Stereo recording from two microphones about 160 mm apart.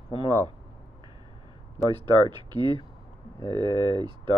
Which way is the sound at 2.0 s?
30° right (ahead or behind).